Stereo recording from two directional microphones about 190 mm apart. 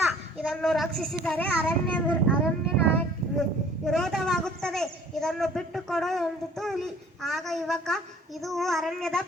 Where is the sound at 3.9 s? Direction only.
Centre (ahead or behind).